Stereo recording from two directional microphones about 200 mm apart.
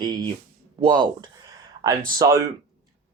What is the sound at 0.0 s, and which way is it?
Speech, 20° right (ahead or behind).